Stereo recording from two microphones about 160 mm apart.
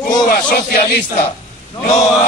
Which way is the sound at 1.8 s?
45° left (ahead or behind).